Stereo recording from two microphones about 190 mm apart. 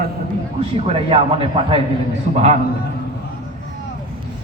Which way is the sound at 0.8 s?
30° right (ahead or behind).